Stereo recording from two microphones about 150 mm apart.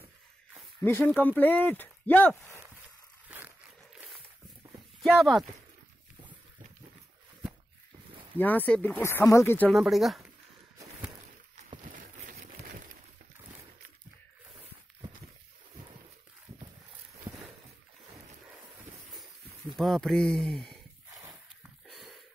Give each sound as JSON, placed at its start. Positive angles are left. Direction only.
{"t": 0.8, "sound": "speech", "side_deg": 10}
{"t": 3.3, "sound": "wild animals", "side_deg": -10}
{"t": 5.0, "sound": "speech", "side_deg": 0}
{"t": 8.4, "sound": "speech", "side_deg": 10}
{"t": 9.7, "sound": "speech", "side_deg": 0}
{"t": 11.9, "sound": "a sound", "side_deg": -60}
{"t": 17.3, "sound": "a sound", "side_deg": -15}
{"t": 19.1, "sound": "a sound", "side_deg": 0}
{"t": 21.8, "sound": "wheeze", "side_deg": 0}